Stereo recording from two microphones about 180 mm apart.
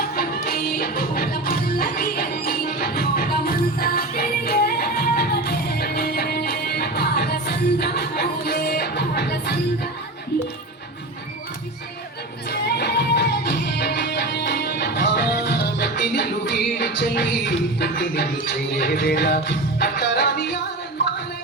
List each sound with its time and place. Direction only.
0.4 s music: 55° left (ahead or behind)
12.5 s music: 65° left (ahead or behind)